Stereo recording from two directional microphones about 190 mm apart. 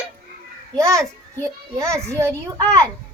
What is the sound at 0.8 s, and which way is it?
A child's voice, 15° right (ahead or behind).